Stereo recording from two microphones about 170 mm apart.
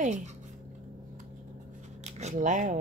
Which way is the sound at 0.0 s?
45° right (ahead or behind).